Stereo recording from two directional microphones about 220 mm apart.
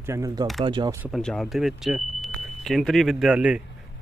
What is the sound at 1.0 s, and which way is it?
Speech, centre (ahead or behind).